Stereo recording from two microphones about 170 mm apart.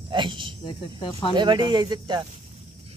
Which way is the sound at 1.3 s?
25° right (ahead or behind).